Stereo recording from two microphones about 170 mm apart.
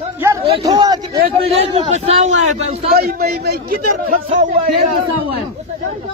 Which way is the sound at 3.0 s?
60° right (ahead or behind).